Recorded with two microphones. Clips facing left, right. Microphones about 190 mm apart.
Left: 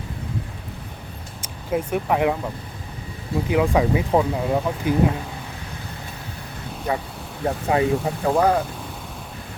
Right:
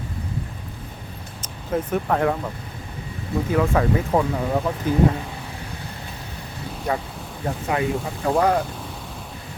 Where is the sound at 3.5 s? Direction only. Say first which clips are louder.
Left 1 dB; 15° left (ahead or behind).